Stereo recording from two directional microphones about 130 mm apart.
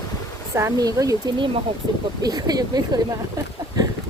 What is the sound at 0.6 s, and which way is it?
Speech, 25° right (ahead or behind).